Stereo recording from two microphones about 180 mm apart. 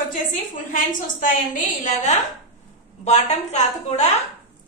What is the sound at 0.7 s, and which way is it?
A woman's voice, 50° left (ahead or behind).